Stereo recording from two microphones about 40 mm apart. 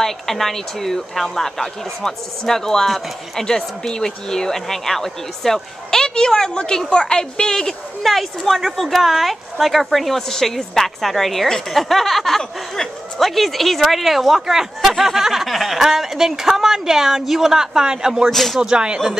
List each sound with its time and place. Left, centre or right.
0.0 s a woman's voice: centre
8.0 s speech: centre
18.3 s speech: centre
18.6 s speech: right